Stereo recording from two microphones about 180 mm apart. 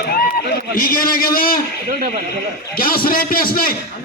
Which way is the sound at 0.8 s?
55° left (ahead or behind).